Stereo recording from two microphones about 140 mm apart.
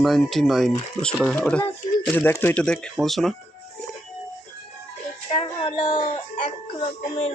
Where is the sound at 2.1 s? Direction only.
15° left (ahead or behind).